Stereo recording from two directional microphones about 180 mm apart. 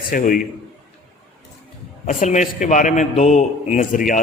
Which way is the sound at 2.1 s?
40° left (ahead or behind).